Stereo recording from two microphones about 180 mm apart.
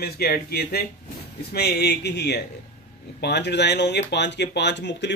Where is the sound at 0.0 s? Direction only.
60° left (ahead or behind).